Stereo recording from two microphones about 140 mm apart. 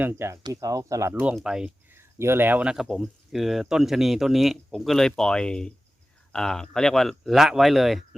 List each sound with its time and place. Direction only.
0.0 s speech: 15° right (ahead or behind)
1.4 s speech: 5° right (ahead or behind)
2.0 s speech: 15° right (ahead or behind); by 8.0 s centre (ahead or behind)